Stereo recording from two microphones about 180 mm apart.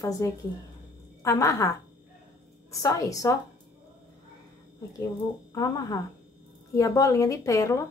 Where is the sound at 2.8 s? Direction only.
20° left (ahead or behind).